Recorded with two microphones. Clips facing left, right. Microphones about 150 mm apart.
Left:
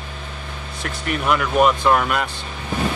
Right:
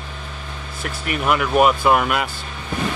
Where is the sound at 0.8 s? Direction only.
5° right (ahead or behind).